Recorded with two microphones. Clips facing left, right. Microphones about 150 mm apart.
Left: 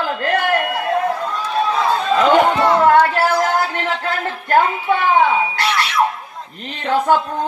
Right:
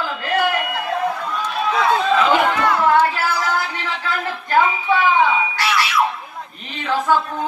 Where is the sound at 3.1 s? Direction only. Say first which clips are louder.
Left 5 dB; 50° left (ahead or behind).